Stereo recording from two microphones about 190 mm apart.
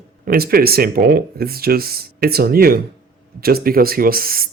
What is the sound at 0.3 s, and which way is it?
Speech, 50° right (ahead or behind).